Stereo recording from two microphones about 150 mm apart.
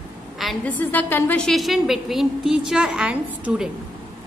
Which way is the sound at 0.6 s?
10° left (ahead or behind).